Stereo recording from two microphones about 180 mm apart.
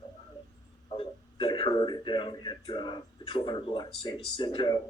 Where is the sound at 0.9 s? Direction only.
30° left (ahead or behind).